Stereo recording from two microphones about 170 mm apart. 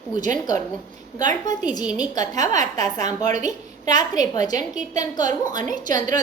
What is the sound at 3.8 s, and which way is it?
Speech, 20° left (ahead or behind).